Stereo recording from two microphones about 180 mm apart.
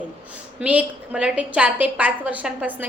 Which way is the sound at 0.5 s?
5° right (ahead or behind).